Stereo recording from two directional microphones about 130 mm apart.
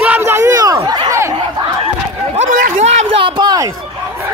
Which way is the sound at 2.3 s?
75° right (ahead or behind).